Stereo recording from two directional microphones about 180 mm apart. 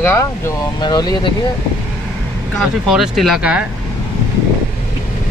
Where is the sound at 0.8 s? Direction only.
20° left (ahead or behind).